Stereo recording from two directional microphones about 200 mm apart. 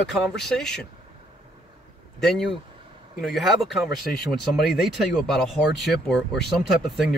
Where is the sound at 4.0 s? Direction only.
50° left (ahead or behind).